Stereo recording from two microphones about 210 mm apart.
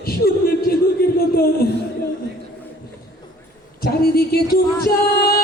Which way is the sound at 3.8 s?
45° left (ahead or behind).